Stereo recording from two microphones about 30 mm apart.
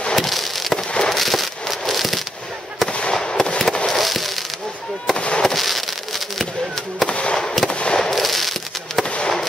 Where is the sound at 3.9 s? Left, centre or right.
Centre.